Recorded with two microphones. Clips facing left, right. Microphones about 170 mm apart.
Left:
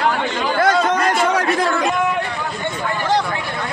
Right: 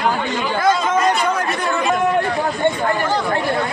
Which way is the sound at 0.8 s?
80° left.